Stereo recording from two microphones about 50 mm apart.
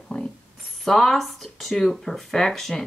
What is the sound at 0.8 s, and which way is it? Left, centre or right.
Speech, centre.